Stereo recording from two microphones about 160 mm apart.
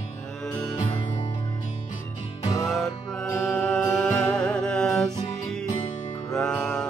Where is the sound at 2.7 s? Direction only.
Centre (ahead or behind).